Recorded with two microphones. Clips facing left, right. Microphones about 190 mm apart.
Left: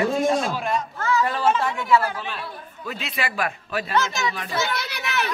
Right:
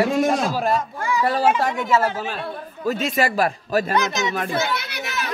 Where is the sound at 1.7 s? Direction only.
20° right (ahead or behind).